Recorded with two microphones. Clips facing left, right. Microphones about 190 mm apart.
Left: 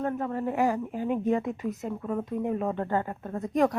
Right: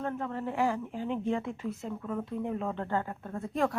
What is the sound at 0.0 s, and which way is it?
Speech, 45° left (ahead or behind).